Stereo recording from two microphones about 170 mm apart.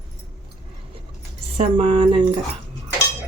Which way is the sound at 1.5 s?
35° right (ahead or behind).